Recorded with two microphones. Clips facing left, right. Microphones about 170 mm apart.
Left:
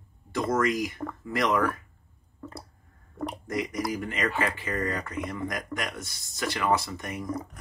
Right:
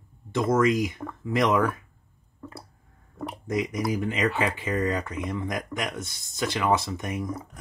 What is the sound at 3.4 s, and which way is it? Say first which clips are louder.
Speech: right 4 dB; 20° right (ahead or behind).